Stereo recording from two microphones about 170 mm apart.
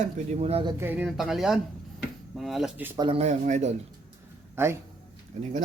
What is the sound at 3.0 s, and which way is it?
Speech, 35° right (ahead or behind).